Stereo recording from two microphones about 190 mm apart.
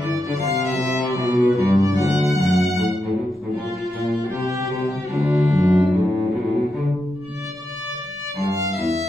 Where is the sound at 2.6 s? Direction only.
Centre (ahead or behind).